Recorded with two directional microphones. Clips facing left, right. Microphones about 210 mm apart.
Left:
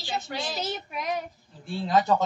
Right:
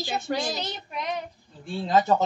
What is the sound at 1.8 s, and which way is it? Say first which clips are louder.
Speech: right 1 dB; 25° right (ahead or behind).